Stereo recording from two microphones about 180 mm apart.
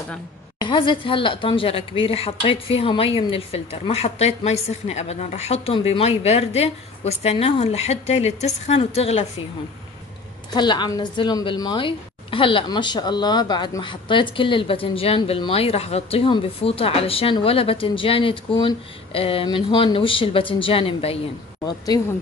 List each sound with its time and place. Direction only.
0.6 s speech: 25° left (ahead or behind)
10.5 s speech: 25° left (ahead or behind)
21.6 s speech: 20° left (ahead or behind)